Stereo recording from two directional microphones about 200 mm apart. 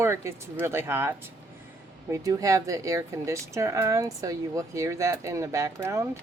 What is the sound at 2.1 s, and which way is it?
Speech, 15° right (ahead or behind).